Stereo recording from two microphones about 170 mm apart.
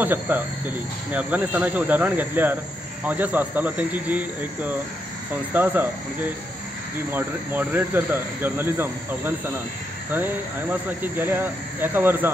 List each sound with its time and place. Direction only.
0.0 s speech: 10° right (ahead or behind)
7.1 s speech: 10° right (ahead or behind)